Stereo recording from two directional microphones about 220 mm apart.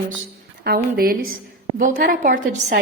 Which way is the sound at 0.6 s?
45° right (ahead or behind).